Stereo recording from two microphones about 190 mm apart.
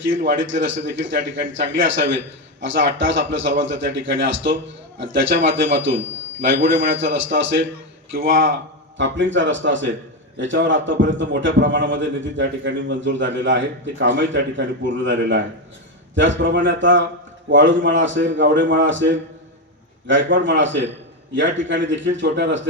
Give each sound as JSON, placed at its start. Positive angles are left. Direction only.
{"t": 0.1, "sound": "a man's voice", "side_deg": -75}
{"t": 8.1, "sound": "speech", "side_deg": -90}
{"t": 9.0, "sound": "a man's voice", "side_deg": -75}